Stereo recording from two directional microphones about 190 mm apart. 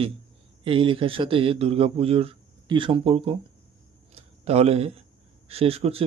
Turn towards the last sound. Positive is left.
turn(degrees=-30)  # may be behind; listen again after turning